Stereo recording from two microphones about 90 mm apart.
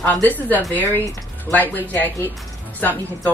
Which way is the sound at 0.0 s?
20° left (ahead or behind).